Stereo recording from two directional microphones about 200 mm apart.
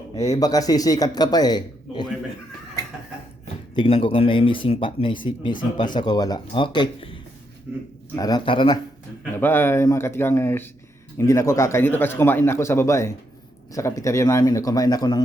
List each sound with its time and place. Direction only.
0.2 s speech: 15° left (ahead or behind)
3.8 s speech: 25° left (ahead or behind)
9.4 s speech: 10° left (ahead or behind)